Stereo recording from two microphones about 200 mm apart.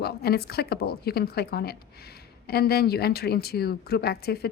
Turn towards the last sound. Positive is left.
turn(degrees=50)  # may be behind; listen again after turning